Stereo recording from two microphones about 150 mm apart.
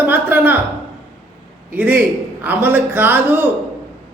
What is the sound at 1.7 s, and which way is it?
A woman's voice, 10° right (ahead or behind).